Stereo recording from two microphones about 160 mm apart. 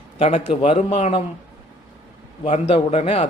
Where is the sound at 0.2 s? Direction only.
40° left (ahead or behind).